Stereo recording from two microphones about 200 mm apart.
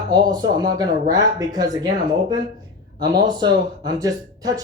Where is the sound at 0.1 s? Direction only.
20° right (ahead or behind).